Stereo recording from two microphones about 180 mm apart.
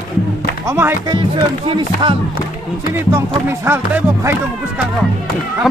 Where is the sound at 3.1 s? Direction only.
15° right (ahead or behind).